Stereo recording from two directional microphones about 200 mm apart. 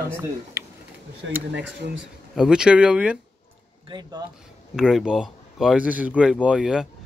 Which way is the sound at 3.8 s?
20° right (ahead or behind).